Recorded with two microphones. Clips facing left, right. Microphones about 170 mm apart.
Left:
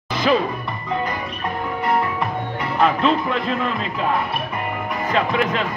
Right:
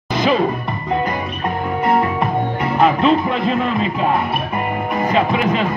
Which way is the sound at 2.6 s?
5° right (ahead or behind).